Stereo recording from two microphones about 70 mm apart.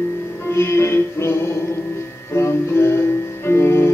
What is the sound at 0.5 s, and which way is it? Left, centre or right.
Music, left.